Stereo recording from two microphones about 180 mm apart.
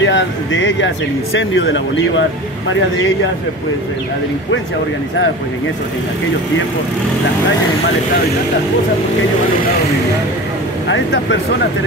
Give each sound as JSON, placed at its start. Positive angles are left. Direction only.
{"t": 0.0, "sound": "speech", "side_deg": 90}